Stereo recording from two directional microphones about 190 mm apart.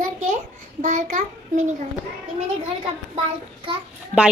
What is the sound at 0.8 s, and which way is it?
Child singing, 40° right (ahead or behind).